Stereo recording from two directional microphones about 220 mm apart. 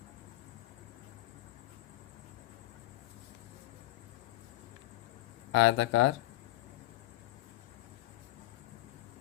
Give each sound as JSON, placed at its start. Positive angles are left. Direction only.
{"t": 5.5, "sound": "speech", "side_deg": 70}